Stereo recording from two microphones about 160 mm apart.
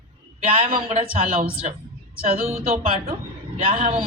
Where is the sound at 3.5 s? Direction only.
35° right (ahead or behind).